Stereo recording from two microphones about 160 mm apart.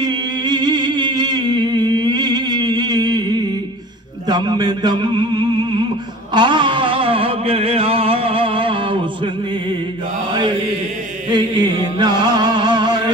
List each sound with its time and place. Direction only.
0.0 s a sound: 25° right (ahead or behind)
10.3 s mantra: 30° right (ahead or behind)
11.2 s music: 25° right (ahead or behind)